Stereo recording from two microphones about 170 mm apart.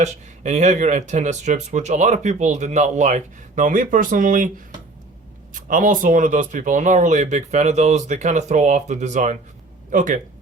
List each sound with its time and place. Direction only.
0.0 s speech: 45° right (ahead or behind)
5.5 s speech: 50° right (ahead or behind)